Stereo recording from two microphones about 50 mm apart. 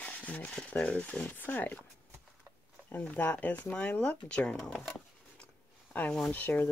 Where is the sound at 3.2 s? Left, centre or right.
Left; by 4.8 s centre.